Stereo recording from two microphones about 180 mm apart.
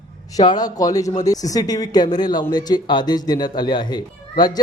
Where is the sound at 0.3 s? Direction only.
20° left (ahead or behind).